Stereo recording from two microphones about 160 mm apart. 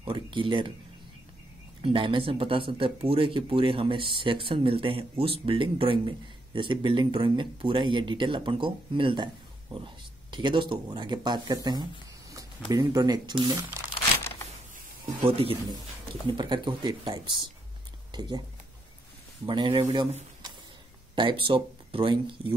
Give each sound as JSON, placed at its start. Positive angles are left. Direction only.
{"t": 0.0, "sound": "speech", "side_deg": -30}
{"t": 1.8, "sound": "speech", "side_deg": -35}
{"t": 15.1, "sound": "speech", "side_deg": -35}
{"t": 19.4, "sound": "speech", "side_deg": -30}
{"t": 21.1, "sound": "speech", "side_deg": -30}